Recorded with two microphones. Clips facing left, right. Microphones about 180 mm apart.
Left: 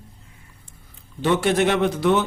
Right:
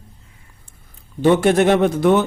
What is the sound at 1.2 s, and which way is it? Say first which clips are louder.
Speech: right 5 dB; 50° right (ahead or behind).